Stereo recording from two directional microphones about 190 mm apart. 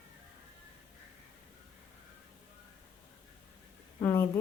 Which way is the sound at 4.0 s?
15° left (ahead or behind).